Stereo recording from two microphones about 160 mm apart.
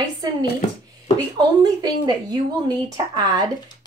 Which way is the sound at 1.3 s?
25° right (ahead or behind).